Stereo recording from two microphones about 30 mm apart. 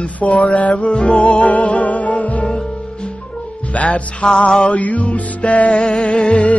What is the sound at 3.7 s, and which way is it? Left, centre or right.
Speech, left.